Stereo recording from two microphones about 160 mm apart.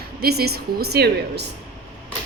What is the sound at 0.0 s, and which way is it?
A woman's voice, 80° right.